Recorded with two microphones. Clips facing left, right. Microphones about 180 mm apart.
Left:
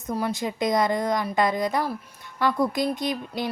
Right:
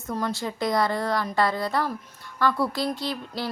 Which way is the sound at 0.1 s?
15° left (ahead or behind).